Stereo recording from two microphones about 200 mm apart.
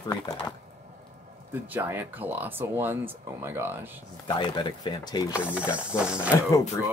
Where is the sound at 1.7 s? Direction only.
10° right (ahead or behind).